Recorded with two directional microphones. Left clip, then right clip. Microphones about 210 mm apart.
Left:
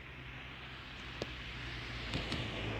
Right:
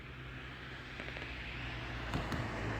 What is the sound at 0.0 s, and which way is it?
Vehicle, 50° right (ahead or behind).